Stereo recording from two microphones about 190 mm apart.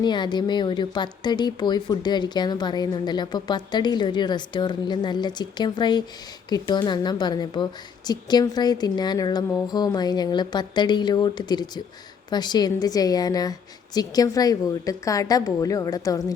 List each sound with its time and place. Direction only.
0.0 s speech: 25° left (ahead or behind)